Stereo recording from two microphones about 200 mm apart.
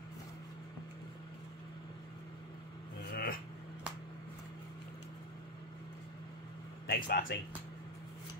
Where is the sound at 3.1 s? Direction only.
45° left (ahead or behind).